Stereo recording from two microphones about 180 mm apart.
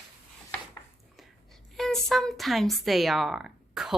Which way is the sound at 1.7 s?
Centre (ahead or behind).